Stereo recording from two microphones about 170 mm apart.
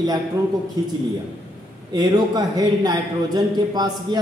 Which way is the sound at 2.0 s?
25° right (ahead or behind).